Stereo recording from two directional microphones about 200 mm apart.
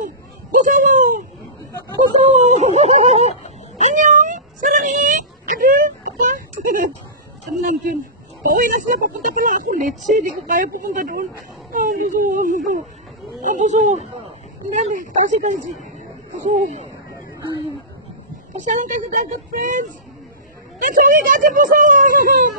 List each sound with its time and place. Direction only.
0.0 s a sound: 40° right (ahead or behind)
8.4 s speech: 45° right (ahead or behind)
18.7 s speech: 40° right (ahead or behind)